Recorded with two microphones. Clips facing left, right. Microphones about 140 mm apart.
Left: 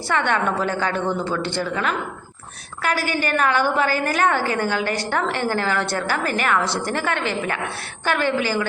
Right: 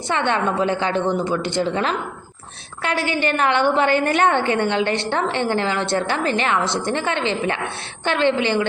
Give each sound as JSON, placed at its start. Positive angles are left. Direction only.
{"t": 0.1, "sound": "a woman's voice", "side_deg": -20}